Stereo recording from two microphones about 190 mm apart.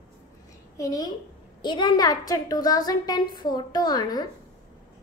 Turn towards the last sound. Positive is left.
turn(degrees=20)  # may be behind; listen again after turning